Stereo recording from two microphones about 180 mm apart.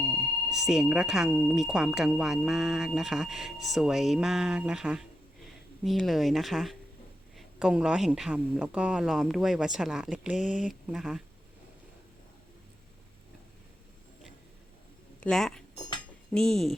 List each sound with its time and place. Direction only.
0.0 s speech: centre (ahead or behind)
15.2 s speech: centre (ahead or behind)